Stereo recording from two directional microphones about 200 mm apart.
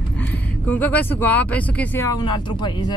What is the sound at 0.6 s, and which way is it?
Speech, 10° left (ahead or behind).